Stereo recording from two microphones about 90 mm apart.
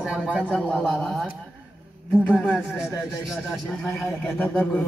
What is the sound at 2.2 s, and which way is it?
Speech, 10° right (ahead or behind).